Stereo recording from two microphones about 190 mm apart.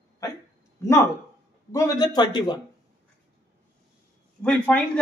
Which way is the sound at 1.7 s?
20° left (ahead or behind).